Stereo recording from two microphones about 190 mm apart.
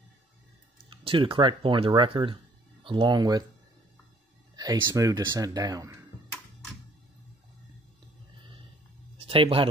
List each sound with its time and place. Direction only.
0.8 s speech: 25° right (ahead or behind)
4.8 s speech: 20° right (ahead or behind)
9.2 s speech: 30° right (ahead or behind)